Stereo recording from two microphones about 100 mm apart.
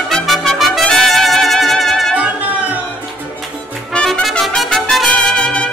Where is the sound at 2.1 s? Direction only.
15° right (ahead or behind).